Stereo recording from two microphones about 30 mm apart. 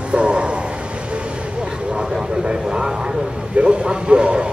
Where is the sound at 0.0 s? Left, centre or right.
Right.